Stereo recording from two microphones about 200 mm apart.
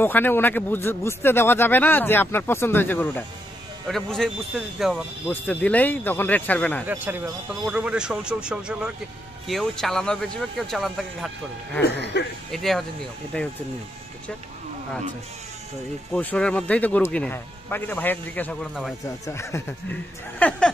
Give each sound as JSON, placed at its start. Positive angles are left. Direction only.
{"t": 0.0, "sound": "speech", "side_deg": 10}
{"t": 7.6, "sound": "speech", "side_deg": -5}
{"t": 11.8, "sound": "speech", "side_deg": 60}
{"t": 12.4, "sound": "speech", "side_deg": 0}
{"t": 16.1, "sound": "speech", "side_deg": 5}
{"t": 19.2, "sound": "speech", "side_deg": 15}